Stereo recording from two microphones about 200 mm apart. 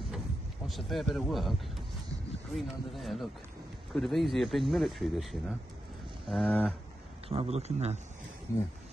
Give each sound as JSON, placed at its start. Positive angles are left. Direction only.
{"t": 0.7, "sound": "speech", "side_deg": 0}
{"t": 2.5, "sound": "speech", "side_deg": 0}
{"t": 7.2, "sound": "speech", "side_deg": -30}